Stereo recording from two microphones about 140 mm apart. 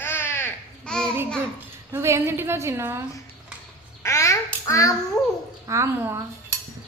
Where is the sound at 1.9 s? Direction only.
20° right (ahead or behind).